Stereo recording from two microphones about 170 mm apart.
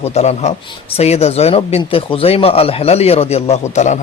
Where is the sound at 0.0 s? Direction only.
40° left (ahead or behind).